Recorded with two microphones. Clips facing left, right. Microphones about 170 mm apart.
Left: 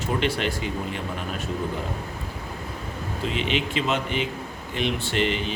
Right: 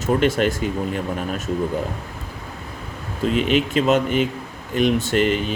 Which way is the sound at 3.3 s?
45° right (ahead or behind).